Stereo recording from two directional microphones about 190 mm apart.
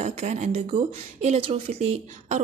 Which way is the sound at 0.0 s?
35° right (ahead or behind).